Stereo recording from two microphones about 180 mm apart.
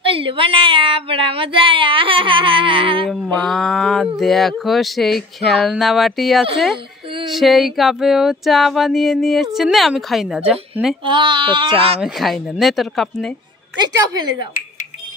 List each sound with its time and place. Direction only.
0.0 s speech: 30° right (ahead or behind)
3.4 s female singing: 5° left (ahead or behind)
11.1 s speech: 25° right (ahead or behind)
12.0 s female singing: centre (ahead or behind)
13.7 s speech: 25° right (ahead or behind)